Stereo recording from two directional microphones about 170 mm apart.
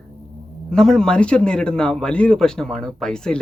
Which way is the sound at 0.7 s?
5° left (ahead or behind).